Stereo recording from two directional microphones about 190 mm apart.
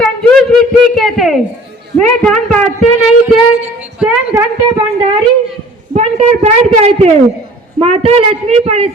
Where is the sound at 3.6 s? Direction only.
10° right (ahead or behind).